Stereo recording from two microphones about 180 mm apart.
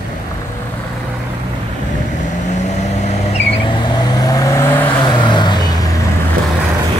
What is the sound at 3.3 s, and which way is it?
Vehicle, 25° left (ahead or behind).